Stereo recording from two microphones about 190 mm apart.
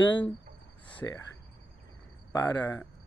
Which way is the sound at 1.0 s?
15° left (ahead or behind).